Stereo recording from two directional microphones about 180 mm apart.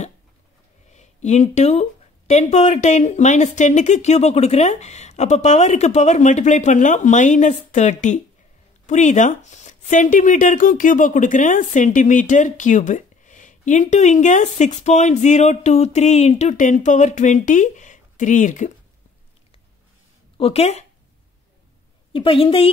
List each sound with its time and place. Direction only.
0.8 s speech: 40° left (ahead or behind)
20.3 s speech: 35° left (ahead or behind)
22.1 s a woman's voice: 30° left (ahead or behind)